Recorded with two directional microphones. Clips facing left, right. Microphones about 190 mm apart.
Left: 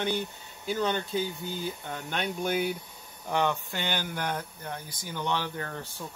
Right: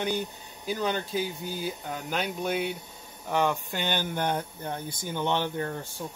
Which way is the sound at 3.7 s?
20° right (ahead or behind).